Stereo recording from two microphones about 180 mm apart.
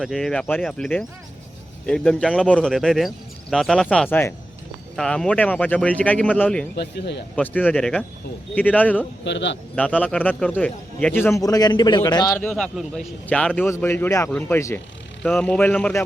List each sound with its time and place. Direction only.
0.0 s a man's voice: centre (ahead or behind)
6.7 s speech: 70° left (ahead or behind)
7.3 s a man's voice: 10° left (ahead or behind)
9.2 s speech: 80° left
9.7 s a man's voice: 5° left (ahead or behind)
12.4 s a man's voice: 5° left (ahead or behind)